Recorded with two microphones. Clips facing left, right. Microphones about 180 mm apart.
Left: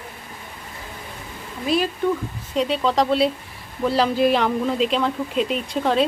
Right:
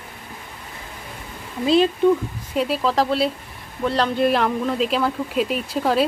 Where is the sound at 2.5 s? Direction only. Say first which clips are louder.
Even; 5° right (ahead or behind).